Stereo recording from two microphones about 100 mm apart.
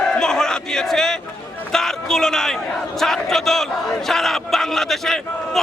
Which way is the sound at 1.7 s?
5° left (ahead or behind).